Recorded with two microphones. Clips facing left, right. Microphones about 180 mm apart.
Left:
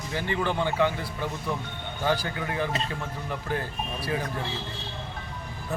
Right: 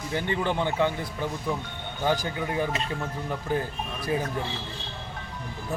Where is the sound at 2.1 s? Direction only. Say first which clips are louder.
Right 1 dB; 20° right (ahead or behind).